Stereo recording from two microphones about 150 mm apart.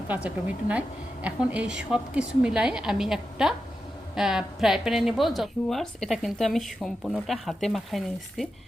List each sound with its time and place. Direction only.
0.1 s a woman's voice: 10° right (ahead or behind)